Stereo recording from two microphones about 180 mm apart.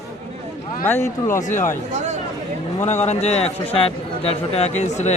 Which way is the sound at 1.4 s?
45° left (ahead or behind).